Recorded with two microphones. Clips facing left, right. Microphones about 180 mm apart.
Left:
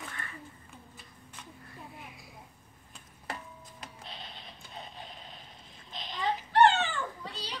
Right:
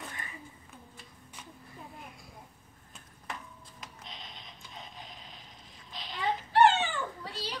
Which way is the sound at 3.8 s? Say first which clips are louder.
Left 1 dB; 30° left (ahead or behind).